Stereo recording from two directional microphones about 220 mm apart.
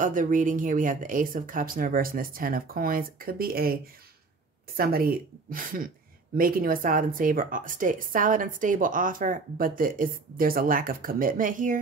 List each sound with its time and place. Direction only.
0.0 s speech: 35° right (ahead or behind)